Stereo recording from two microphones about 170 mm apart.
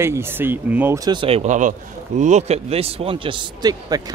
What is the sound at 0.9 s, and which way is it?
Speech, 25° right (ahead or behind).